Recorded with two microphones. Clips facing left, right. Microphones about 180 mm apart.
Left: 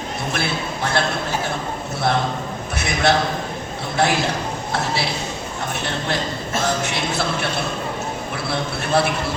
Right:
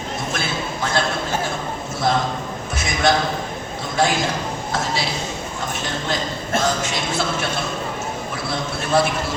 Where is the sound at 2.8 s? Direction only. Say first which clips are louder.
Even; 60° left (ahead or behind).